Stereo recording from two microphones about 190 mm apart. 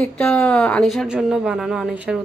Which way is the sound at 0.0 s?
5° left (ahead or behind).